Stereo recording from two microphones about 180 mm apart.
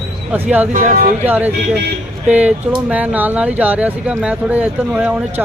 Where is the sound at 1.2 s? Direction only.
10° right (ahead or behind).